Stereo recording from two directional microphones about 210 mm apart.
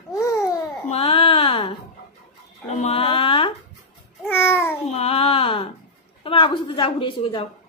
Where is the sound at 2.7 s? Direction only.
30° left (ahead or behind).